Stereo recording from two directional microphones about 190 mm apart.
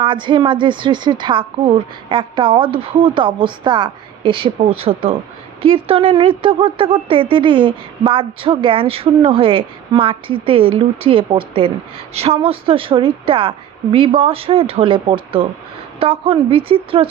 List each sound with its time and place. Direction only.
0.0 s a woman's voice: 25° right (ahead or behind)